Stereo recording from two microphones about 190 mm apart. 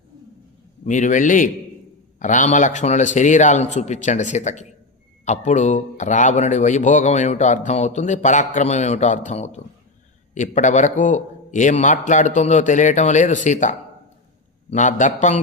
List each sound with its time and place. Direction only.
0.9 s a man's voice: 40° left (ahead or behind)